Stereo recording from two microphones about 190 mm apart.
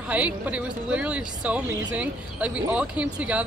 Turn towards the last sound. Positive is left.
turn(degrees=-5)  # may be behind; listen again after turning